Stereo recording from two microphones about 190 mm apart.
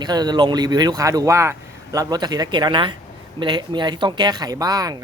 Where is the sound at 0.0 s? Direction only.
20° right (ahead or behind).